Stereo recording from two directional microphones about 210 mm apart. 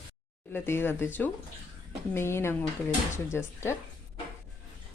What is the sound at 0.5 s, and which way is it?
Speech, 10° left (ahead or behind).